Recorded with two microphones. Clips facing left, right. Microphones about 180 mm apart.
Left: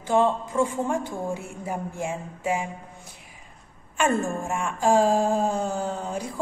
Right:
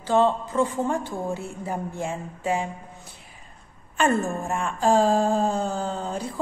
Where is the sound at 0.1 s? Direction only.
15° left (ahead or behind).